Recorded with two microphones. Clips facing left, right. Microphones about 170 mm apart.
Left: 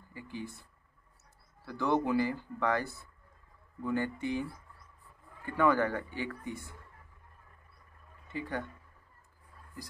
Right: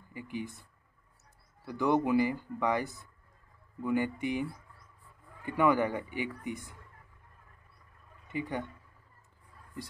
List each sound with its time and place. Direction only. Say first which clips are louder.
0.1 s speech: right 3 dB; 15° right (ahead or behind)
1.7 s speech: right 2 dB; 15° right (ahead or behind)
8.3 s speech: right 2 dB; 15° right (ahead or behind)